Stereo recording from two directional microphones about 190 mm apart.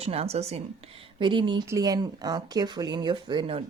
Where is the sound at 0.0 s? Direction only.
30° right (ahead or behind).